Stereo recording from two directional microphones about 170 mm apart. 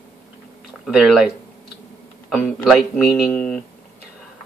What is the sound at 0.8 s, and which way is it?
Speech, centre (ahead or behind).